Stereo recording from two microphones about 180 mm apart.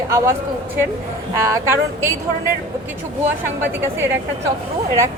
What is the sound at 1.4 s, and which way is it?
Speech, 15° right (ahead or behind).